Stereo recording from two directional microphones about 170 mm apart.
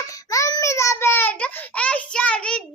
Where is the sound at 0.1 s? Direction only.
20° left (ahead or behind).